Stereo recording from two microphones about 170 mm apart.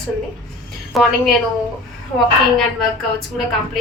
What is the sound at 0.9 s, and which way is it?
Speech, centre (ahead or behind).